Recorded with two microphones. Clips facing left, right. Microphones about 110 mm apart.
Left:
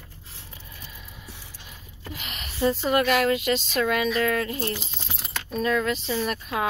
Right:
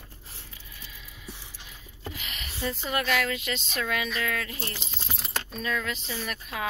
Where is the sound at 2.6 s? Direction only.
35° left (ahead or behind).